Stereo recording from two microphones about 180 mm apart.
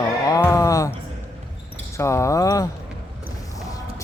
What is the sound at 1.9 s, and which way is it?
Speech, 15° left (ahead or behind).